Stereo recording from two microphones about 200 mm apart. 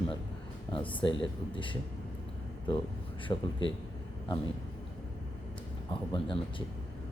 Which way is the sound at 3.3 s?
20° left (ahead or behind).